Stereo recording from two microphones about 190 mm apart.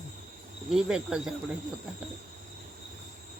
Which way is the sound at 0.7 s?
5° right (ahead or behind).